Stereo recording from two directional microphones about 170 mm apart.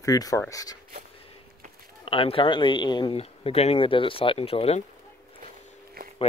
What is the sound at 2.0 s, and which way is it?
Speech, 35° left (ahead or behind).